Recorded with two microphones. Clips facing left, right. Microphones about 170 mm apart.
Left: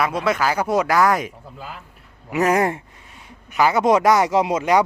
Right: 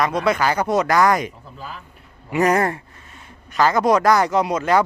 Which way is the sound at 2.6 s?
20° left (ahead or behind).